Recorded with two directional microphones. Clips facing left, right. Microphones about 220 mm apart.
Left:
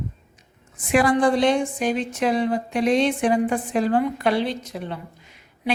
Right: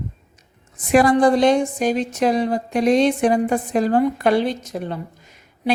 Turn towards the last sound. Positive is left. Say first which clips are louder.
# right 4 dB
turn(degrees=-45)  # may be behind; listen again after turning